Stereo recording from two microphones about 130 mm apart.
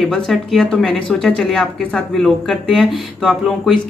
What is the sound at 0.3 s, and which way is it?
Speech, centre (ahead or behind).